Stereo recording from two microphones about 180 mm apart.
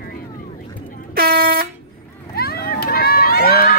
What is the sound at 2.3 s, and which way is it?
Run, 60° left (ahead or behind).